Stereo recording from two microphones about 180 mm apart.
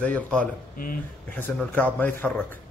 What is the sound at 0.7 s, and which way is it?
Speech, 50° left (ahead or behind).